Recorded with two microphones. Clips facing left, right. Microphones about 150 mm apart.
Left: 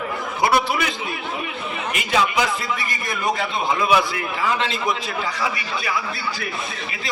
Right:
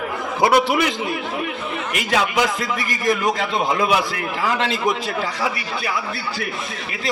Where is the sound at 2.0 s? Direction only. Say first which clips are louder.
Even; 70° right (ahead or behind).